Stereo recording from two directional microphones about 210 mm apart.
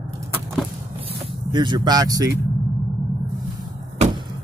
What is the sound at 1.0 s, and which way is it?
Vehicle, 25° right (ahead or behind).